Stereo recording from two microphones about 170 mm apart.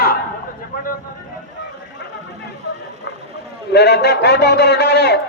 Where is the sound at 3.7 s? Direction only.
75° left (ahead or behind).